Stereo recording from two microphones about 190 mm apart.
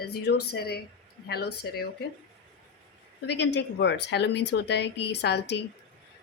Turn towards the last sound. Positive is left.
turn(degrees=60)  # may be behind; listen again after turning